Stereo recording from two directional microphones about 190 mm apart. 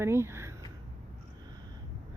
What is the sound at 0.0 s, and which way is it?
Speech, 15° right (ahead or behind).